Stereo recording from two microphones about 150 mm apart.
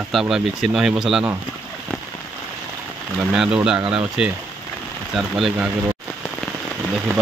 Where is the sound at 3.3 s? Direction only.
5° right (ahead or behind).